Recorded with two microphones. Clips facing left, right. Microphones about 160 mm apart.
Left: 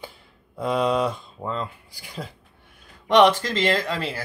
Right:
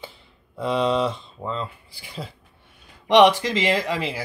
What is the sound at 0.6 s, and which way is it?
Speech, centre (ahead or behind).